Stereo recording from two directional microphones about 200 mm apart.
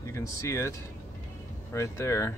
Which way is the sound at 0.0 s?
15° left (ahead or behind).